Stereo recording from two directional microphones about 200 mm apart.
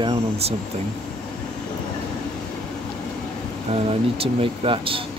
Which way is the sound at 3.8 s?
30° right (ahead or behind).